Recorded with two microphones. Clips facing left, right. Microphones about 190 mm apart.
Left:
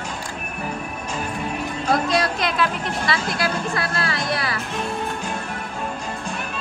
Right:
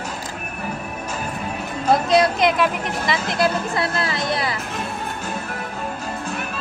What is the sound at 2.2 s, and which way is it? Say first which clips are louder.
Speech: right 5 dB; 20° right (ahead or behind).